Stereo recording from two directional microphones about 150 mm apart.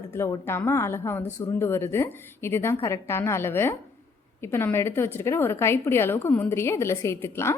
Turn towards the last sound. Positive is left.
turn(degrees=15)  # may be behind; listen again after turning